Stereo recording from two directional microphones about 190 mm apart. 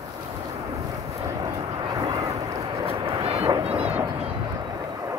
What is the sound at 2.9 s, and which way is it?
Vehicle, 30° right (ahead or behind).